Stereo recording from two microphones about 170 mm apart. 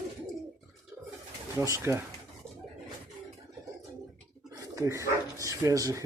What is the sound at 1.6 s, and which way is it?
Speech, 15° right (ahead or behind).